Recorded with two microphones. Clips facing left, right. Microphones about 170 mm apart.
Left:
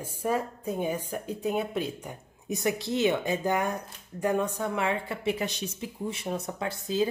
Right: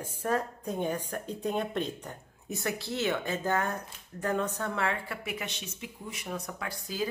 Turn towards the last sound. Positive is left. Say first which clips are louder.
# left 6 dB
turn(degrees=25)  # may be behind; listen again after turning